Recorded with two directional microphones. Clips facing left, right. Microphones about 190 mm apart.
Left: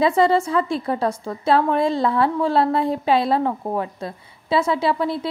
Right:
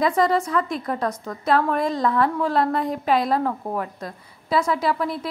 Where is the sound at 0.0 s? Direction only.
25° left (ahead or behind).